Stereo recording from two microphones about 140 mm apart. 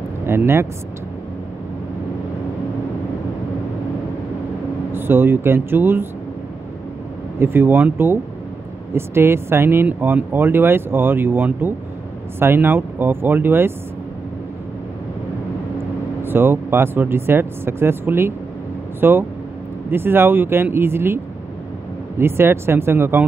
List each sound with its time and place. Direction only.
0.2 s speech: 15° right (ahead or behind)
4.9 s speech: 15° right (ahead or behind)
7.3 s speech: 15° right (ahead or behind)
16.2 s speech: 15° right (ahead or behind)
22.2 s speech: 15° right (ahead or behind)